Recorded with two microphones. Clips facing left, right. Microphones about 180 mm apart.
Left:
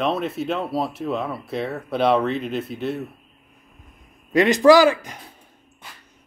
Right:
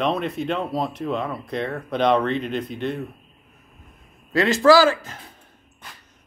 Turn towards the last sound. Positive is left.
turn(degrees=15)  # may be behind; listen again after turning